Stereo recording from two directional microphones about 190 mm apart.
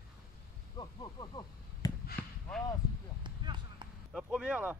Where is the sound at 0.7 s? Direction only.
25° left (ahead or behind).